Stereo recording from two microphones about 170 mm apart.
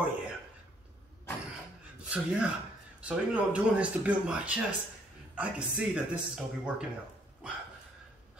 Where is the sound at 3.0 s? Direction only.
5° right (ahead or behind).